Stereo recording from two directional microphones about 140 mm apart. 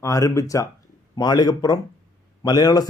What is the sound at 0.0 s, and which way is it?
A man's voice, 20° left (ahead or behind).